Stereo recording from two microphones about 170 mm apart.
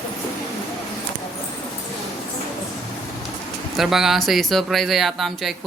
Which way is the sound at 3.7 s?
Centre (ahead or behind).